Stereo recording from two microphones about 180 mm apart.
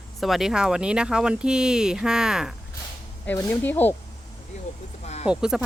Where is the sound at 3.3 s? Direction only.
10° left (ahead or behind).